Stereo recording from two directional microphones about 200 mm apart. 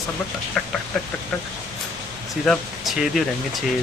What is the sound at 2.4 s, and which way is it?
Speech, centre (ahead or behind).